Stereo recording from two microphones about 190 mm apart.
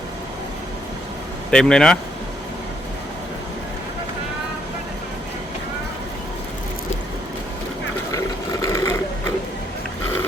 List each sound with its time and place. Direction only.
1.5 s speech: 5° left (ahead or behind)
8.6 s sewing machine: 15° left (ahead or behind)